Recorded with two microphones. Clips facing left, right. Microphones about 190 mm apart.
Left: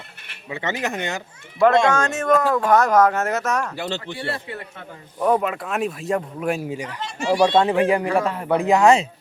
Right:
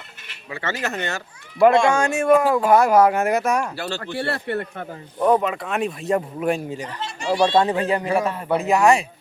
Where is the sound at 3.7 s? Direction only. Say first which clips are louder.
Left 1 dB; 20° left (ahead or behind).